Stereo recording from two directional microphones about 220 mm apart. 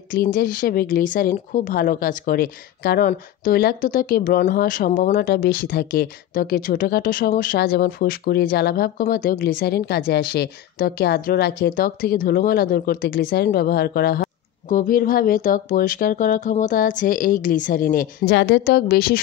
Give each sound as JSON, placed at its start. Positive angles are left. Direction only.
{"t": 0.1, "sound": "speech", "side_deg": 40}